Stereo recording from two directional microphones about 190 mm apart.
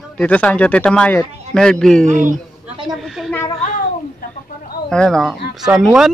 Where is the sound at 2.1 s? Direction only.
45° right (ahead or behind).